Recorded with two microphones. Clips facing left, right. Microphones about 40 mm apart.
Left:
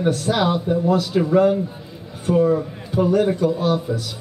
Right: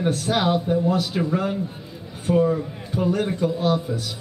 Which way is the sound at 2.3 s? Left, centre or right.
Centre.